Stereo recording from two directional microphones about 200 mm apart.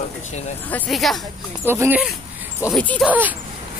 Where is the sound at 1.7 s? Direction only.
10° right (ahead or behind).